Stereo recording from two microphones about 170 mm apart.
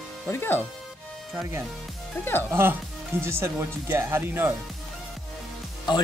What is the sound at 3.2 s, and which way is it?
Speech, 15° right (ahead or behind).